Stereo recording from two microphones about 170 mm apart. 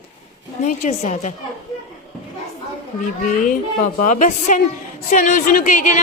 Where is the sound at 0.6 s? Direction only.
45° left (ahead or behind).